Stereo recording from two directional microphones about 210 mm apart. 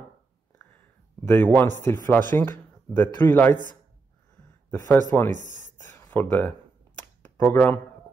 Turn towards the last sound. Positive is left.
turn(degrees=10)  # may be behind; listen again after turning